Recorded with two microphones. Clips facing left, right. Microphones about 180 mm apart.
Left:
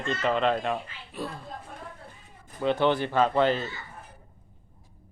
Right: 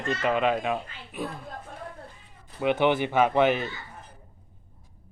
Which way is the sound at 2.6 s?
15° right (ahead or behind).